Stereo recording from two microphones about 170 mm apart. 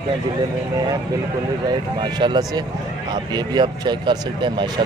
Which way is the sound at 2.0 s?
25° right (ahead or behind).